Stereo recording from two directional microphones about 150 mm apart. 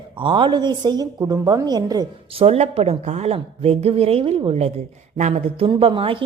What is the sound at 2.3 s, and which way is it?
A woman's voice, 40° right (ahead or behind).